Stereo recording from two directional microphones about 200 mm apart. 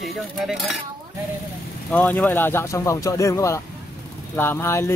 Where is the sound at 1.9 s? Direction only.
5° left (ahead or behind).